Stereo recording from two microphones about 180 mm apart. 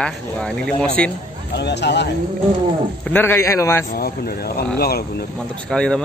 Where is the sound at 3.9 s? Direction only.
60° left (ahead or behind).